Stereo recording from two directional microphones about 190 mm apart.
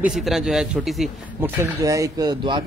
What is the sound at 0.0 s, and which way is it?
A man's voice, centre (ahead or behind).